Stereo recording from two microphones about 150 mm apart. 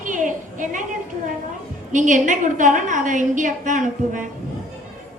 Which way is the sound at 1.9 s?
55° right (ahead or behind).